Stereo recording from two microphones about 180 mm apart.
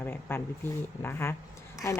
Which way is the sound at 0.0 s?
10° left (ahead or behind).